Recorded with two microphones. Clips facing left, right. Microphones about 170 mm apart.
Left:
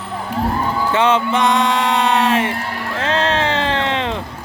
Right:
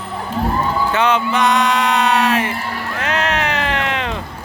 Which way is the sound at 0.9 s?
25° left (ahead or behind).